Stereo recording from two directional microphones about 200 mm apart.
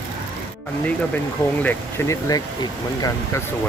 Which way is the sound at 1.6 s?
15° left (ahead or behind).